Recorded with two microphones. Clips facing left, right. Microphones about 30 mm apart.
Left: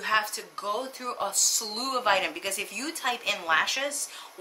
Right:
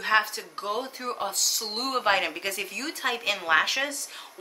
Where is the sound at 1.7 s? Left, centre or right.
Centre.